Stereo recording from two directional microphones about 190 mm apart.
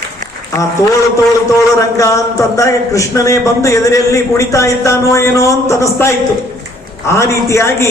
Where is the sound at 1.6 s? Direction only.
15° left (ahead or behind).